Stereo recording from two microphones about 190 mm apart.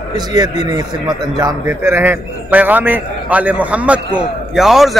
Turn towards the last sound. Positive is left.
turn(degrees=0)  # may be behind; listen again after turning